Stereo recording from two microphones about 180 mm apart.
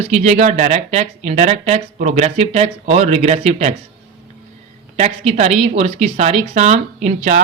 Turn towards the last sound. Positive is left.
turn(degrees=-40)  # may be behind; listen again after turning